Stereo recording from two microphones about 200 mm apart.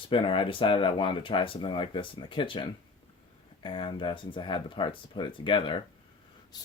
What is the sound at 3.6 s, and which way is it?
Speech, 25° left (ahead or behind).